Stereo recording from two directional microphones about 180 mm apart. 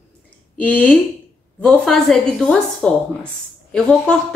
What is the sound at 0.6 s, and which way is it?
A woman's voice, 10° left (ahead or behind).